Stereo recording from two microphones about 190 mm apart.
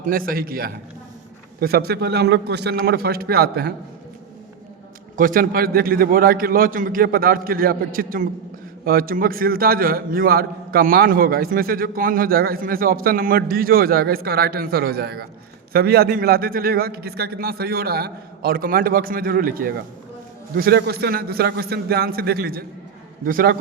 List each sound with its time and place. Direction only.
0.0 s a man's voice: 50° right (ahead or behind)
5.1 s a man's voice: 45° right (ahead or behind)